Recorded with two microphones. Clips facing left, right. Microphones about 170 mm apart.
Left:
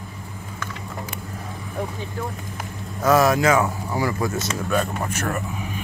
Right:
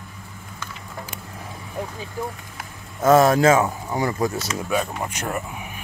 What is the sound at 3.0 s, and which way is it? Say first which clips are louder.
Speech: right 2 dB; 25° right (ahead or behind).